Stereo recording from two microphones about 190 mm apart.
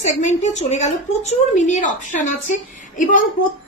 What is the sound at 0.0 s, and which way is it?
A woman's voice, 35° left (ahead or behind).